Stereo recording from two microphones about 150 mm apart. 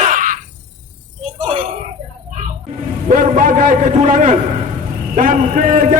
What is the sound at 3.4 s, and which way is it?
A man's voice, 55° right (ahead or behind).